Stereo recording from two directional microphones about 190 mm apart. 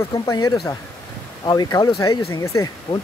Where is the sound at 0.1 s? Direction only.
20° left (ahead or behind).